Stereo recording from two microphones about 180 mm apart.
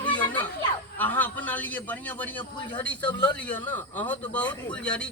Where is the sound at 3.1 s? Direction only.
25° left (ahead or behind).